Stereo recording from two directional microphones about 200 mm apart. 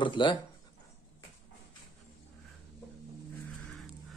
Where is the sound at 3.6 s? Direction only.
Centre (ahead or behind).